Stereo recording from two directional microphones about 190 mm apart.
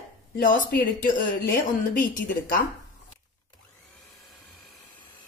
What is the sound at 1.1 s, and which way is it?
Speech, 50° left (ahead or behind).